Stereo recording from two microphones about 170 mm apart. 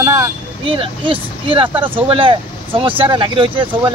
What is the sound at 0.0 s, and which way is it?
Vehicle, 20° right (ahead or behind).